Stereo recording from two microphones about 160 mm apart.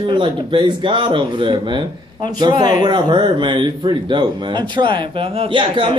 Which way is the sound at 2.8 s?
30° right (ahead or behind).